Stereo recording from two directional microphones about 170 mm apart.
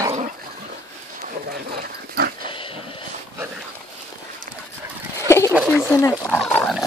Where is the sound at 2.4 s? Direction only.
30° left (ahead or behind).